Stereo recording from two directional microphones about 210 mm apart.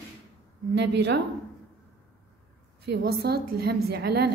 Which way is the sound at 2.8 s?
50° right (ahead or behind).